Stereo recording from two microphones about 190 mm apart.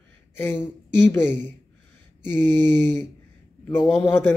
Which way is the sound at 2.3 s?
10° left (ahead or behind).